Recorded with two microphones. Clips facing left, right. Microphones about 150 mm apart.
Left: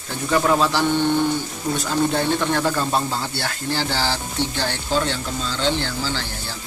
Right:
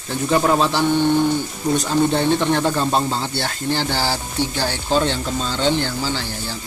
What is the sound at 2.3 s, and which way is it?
Speech, 25° right (ahead or behind).